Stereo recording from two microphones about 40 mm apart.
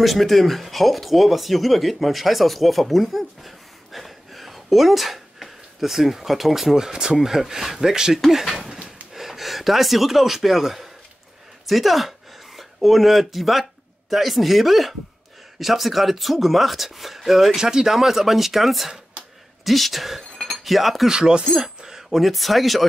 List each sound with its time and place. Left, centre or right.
0.0 s speech: centre
17.6 s speech: centre
19.2 s a sound: right
19.6 s speech: centre
20.3 s chink: centre
21.1 s speech: centre
21.5 s a sound: centre
22.2 s speech: centre